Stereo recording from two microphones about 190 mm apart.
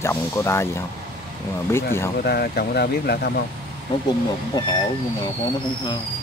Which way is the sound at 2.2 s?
55° left (ahead or behind).